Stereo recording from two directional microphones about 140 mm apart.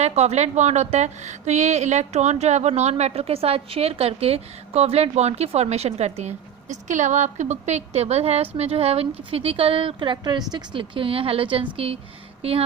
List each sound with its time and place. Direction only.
0.0 s a woman's voice: 50° right (ahead or behind)